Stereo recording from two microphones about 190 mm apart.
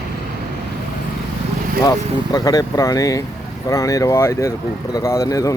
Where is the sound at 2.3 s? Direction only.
20° left (ahead or behind).